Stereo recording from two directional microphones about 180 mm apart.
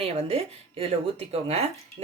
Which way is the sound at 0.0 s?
35° right (ahead or behind).